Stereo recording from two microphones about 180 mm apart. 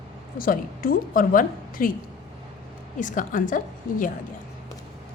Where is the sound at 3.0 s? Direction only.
45° left (ahead or behind).